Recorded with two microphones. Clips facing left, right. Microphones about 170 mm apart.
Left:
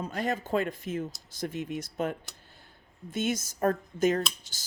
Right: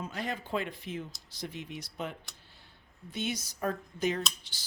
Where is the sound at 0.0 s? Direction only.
45° left (ahead or behind).